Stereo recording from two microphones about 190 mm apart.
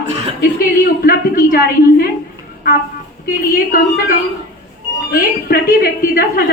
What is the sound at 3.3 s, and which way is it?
A woman's voice, 50° left (ahead or behind).